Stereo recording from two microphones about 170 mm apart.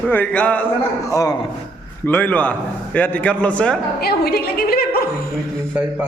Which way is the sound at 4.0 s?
70° left (ahead or behind).